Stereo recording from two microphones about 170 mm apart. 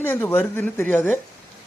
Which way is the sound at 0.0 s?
15° left (ahead or behind).